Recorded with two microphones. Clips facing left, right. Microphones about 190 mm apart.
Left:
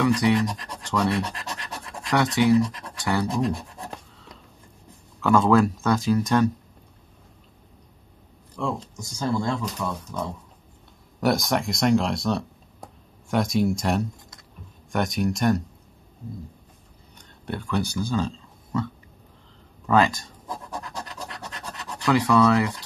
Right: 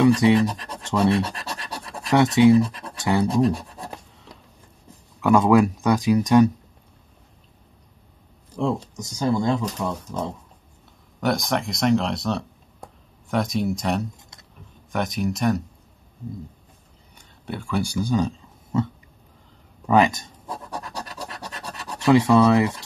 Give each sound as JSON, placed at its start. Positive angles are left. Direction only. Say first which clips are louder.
{"t": 0.0, "sound": "speech", "louder": "right 4 dB", "side_deg": -25}
{"t": 5.2, "sound": "speech", "louder": "right 2 dB", "side_deg": -15}
{"t": 8.6, "sound": "speech", "louder": "right 4 dB", "side_deg": -35}
{"t": 9.2, "sound": "speech", "louder": "right 4 dB", "side_deg": -15}
{"t": 11.1, "sound": "speech", "louder": "left 1 dB", "side_deg": 0}
{"t": 17.2, "sound": "speech", "louder": "even", "side_deg": -5}
{"t": 19.9, "sound": "speech", "louder": "right 2 dB", "side_deg": -20}
{"t": 20.8, "sound": "scratch", "louder": "right 2 dB", "side_deg": -35}
{"t": 22.0, "sound": "speech", "louder": "right 3 dB", "side_deg": -25}